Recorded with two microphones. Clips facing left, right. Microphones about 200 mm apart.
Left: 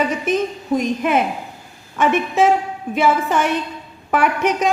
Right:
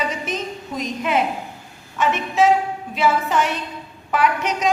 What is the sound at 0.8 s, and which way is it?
A woman's voice, 55° left (ahead or behind).